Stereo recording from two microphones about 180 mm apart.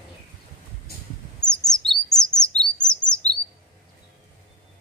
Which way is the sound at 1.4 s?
5° left (ahead or behind).